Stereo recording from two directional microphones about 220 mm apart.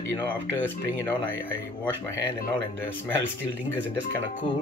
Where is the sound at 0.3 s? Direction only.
10° left (ahead or behind).